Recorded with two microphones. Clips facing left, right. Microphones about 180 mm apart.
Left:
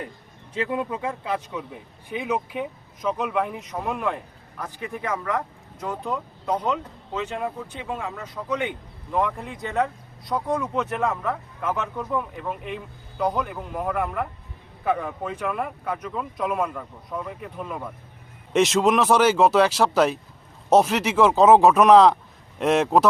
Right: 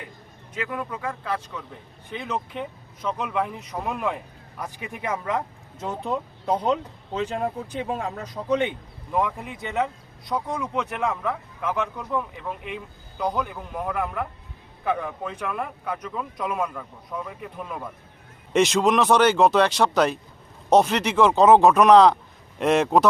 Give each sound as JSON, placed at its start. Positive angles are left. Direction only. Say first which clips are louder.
{"t": 0.5, "sound": "speech", "louder": "left 4 dB", "side_deg": 30}
{"t": 4.6, "sound": "speech", "louder": "left 1 dB", "side_deg": -20}
{"t": 9.1, "sound": "speech", "louder": "even", "side_deg": -10}